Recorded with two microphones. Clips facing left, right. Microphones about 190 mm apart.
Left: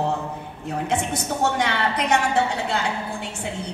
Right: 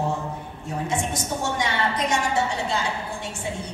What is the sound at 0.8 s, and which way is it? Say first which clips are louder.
A woman's voice: left 2 dB; 60° left (ahead or behind).